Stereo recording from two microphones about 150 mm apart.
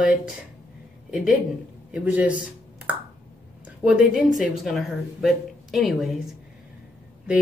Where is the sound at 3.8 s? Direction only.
5° right (ahead or behind).